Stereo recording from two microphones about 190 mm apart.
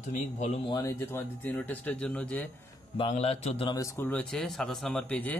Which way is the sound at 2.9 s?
30° left (ahead or behind).